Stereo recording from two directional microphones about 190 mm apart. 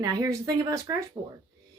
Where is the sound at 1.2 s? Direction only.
35° right (ahead or behind).